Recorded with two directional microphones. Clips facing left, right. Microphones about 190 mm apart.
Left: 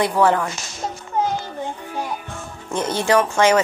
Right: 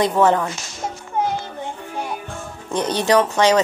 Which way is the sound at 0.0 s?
20° right (ahead or behind).